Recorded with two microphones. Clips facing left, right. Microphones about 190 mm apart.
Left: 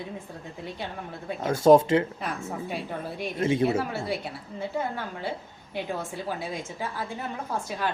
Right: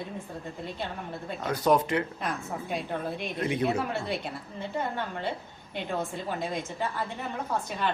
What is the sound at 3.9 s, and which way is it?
Speech, 5° left (ahead or behind).